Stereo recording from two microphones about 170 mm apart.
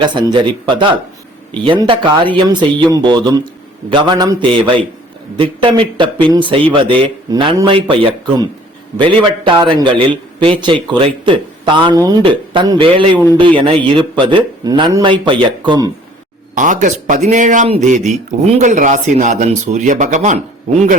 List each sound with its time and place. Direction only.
0.0 s a man's voice: 25° right (ahead or behind)
16.6 s speech: 50° right (ahead or behind)